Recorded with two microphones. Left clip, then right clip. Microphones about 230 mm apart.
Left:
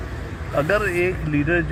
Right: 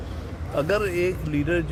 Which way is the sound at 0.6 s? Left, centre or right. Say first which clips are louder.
Left 3 dB; right.